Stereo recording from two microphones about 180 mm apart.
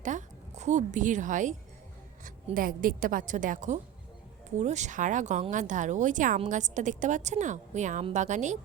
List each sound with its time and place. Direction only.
0.0 s a woman's voice: 45° right (ahead or behind)